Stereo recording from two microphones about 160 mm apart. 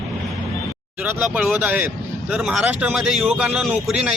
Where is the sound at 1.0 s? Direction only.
10° right (ahead or behind).